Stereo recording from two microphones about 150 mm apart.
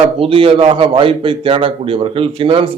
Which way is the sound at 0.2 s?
35° right (ahead or behind).